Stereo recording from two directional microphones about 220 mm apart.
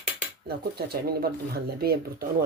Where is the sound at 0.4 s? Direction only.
45° right (ahead or behind).